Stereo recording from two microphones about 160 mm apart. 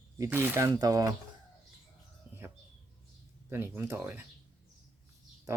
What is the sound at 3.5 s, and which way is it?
Speech, 15° right (ahead or behind).